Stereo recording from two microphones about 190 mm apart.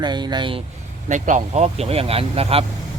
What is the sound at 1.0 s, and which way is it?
Speech, 40° right (ahead or behind).